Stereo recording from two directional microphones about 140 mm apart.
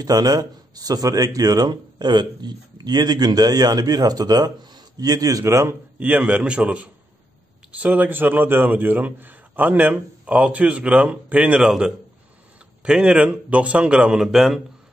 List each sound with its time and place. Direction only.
0.0 s a man's voice: 25° right (ahead or behind); by 14.6 s 5° right (ahead or behind)